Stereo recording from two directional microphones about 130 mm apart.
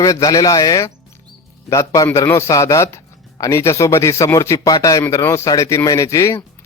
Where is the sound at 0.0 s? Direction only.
25° left (ahead or behind).